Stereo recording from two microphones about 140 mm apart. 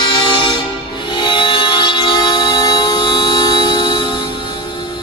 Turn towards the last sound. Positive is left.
turn(degrees=35)  # may be behind; listen again after turning